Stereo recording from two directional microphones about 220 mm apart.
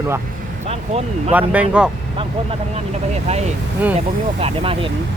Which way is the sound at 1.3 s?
5° right (ahead or behind).